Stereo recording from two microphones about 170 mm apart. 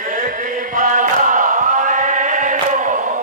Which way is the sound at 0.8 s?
50° right (ahead or behind).